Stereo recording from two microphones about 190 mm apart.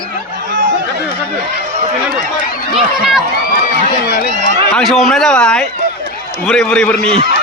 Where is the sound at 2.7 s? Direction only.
Centre (ahead or behind).